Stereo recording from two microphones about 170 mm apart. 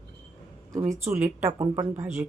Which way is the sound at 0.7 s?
15° right (ahead or behind).